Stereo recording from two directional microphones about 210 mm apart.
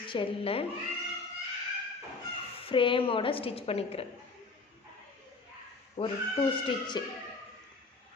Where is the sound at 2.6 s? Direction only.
25° left (ahead or behind).